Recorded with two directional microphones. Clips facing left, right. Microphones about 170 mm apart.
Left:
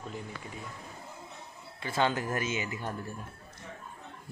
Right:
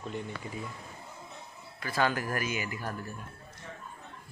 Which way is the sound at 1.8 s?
25° left (ahead or behind).